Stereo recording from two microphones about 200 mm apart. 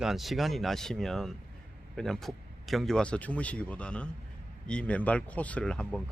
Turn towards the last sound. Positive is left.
turn(degrees=5)  # may be behind; listen again after turning